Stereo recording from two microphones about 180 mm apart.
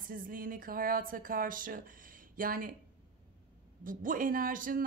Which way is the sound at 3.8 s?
50° right (ahead or behind).